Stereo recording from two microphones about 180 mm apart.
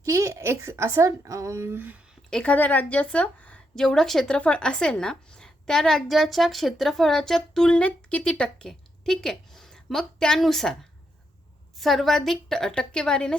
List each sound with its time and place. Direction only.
0.0 s speech: 15° right (ahead or behind)
2.3 s a woman's voice: 5° left (ahead or behind)
11.8 s a woman's voice: centre (ahead or behind)